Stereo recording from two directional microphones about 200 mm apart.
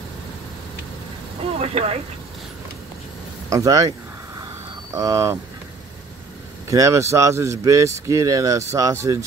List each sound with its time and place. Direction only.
1.6 s speech: 30° right (ahead or behind)
3.4 s speech: 15° right (ahead or behind)
4.9 s speech: 15° right (ahead or behind)
6.7 s speech: 15° right (ahead or behind)